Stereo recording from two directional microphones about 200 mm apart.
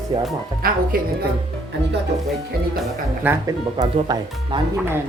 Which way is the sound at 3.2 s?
15° right (ahead or behind).